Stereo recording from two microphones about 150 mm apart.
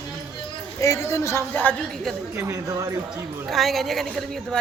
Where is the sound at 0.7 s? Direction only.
20° left (ahead or behind); by 2.1 s 5° left (ahead or behind).